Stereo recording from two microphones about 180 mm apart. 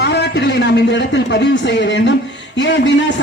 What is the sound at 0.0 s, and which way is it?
A man's voice, 70° left (ahead or behind).